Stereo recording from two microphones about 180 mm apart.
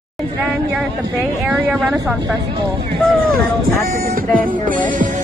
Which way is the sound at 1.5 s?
10° right (ahead or behind).